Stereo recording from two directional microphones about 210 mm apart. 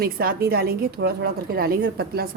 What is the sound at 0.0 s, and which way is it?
Speech, 45° right (ahead or behind).